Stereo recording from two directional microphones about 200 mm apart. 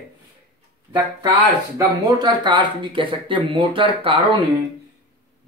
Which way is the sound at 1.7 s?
20° right (ahead or behind).